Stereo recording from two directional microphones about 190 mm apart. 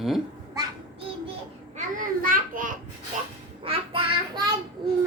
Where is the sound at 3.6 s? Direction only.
25° right (ahead or behind).